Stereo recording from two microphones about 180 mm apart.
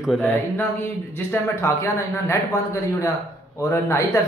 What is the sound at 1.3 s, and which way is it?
Speech, 15° left (ahead or behind).